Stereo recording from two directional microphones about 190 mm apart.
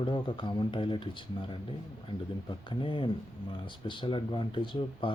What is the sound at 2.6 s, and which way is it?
Speech, 25° left (ahead or behind).